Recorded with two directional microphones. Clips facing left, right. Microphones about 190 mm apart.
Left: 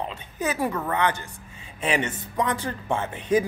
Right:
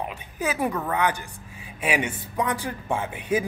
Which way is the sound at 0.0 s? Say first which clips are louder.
Even; 10° right (ahead or behind).